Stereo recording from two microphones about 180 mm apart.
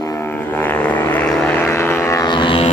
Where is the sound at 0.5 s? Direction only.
10° left (ahead or behind).